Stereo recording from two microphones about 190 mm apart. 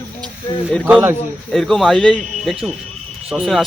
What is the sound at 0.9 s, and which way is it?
A man's voice, 5° right (ahead or behind).